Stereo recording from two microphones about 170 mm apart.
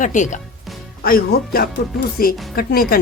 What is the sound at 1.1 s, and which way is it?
Speech, 60° left (ahead or behind).